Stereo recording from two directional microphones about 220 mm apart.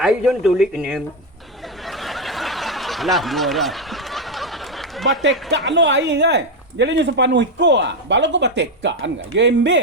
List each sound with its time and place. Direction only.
0.0 s a man's voice: centre (ahead or behind)
1.9 s snicker: centre (ahead or behind)
5.5 s speech: 55° right (ahead or behind)